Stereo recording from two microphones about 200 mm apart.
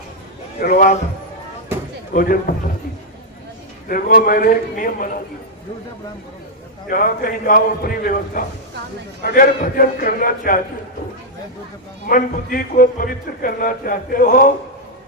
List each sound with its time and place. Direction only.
0.6 s speech: 45° left (ahead or behind)
2.1 s speech: 45° left (ahead or behind)
3.8 s speech: 45° left (ahead or behind)
6.9 s speech: 45° left (ahead or behind)
12.0 s speech: 45° left (ahead or behind)